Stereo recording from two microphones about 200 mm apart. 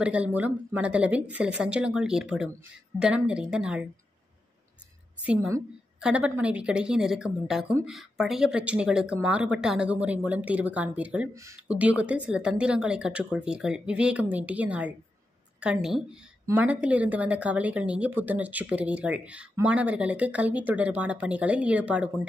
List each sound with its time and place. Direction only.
0.0 s a woman's voice: 5° right (ahead or behind)
5.2 s a woman's voice: 5° right (ahead or behind)